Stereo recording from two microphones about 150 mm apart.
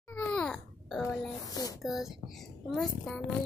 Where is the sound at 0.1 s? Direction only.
10° left (ahead or behind).